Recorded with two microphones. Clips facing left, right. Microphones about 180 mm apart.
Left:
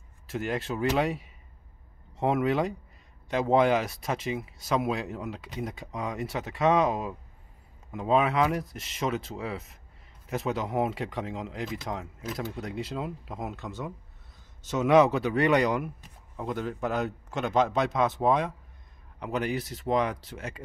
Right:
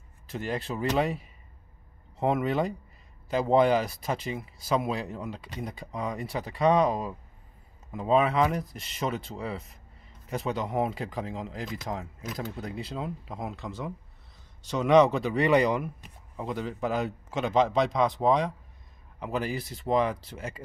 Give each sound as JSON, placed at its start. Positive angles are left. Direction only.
{"t": 0.3, "sound": "speech", "side_deg": 0}